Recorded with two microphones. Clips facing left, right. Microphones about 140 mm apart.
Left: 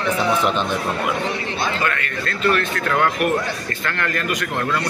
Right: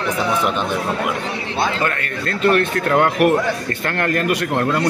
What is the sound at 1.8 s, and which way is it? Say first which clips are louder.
Speech: right 2 dB; 45° right (ahead or behind).